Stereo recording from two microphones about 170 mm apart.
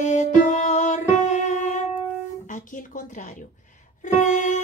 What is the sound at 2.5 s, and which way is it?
Speech, 50° left (ahead or behind).